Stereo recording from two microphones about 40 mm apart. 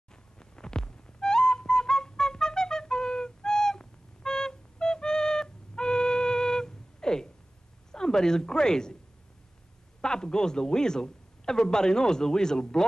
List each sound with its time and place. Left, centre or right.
0.1 s music: centre
7.9 s a woman's voice: centre
10.0 s a man's voice: centre